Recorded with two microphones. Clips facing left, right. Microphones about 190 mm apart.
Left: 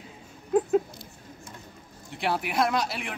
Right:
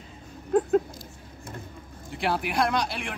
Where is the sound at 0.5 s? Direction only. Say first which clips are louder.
Right 1 dB; 5° left (ahead or behind).